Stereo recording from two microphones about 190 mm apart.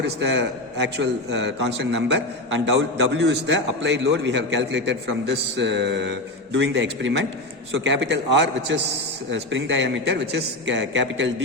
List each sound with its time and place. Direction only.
0.0 s a man's voice: 65° right (ahead or behind)